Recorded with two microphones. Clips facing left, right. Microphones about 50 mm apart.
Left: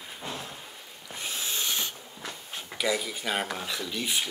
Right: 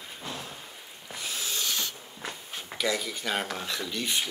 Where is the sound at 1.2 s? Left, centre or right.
Left.